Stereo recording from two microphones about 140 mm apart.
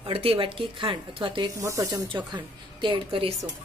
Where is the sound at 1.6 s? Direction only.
20° right (ahead or behind).